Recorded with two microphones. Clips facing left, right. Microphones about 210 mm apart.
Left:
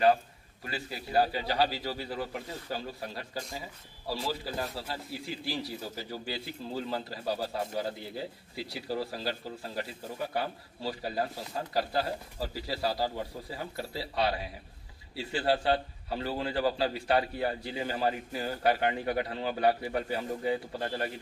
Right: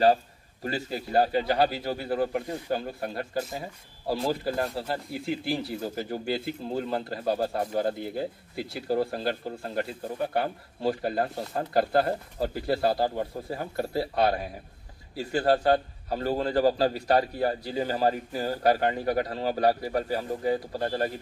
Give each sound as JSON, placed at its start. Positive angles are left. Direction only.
{"t": 0.7, "sound": "a man's voice", "side_deg": -45}